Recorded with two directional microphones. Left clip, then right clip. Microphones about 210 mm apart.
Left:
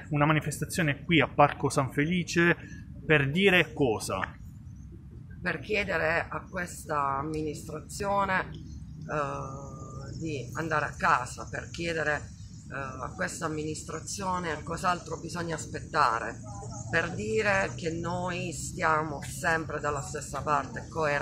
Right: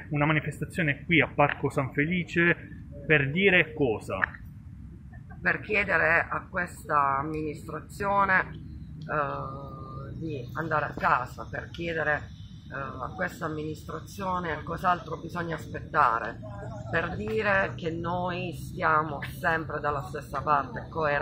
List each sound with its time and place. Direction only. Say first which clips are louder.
0.1 s speech: even; 15° left (ahead or behind)
5.4 s speech: right 4 dB; 10° left (ahead or behind)
10.5 s speech: right 2 dB; 10° left (ahead or behind)